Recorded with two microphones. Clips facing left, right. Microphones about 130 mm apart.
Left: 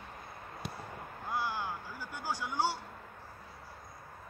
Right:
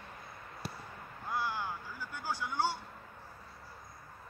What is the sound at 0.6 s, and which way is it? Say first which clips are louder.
Basketball bounce: even; 5° right (ahead or behind).